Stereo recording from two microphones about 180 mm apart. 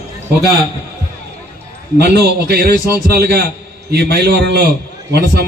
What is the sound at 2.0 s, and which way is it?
A man's voice, 65° right (ahead or behind).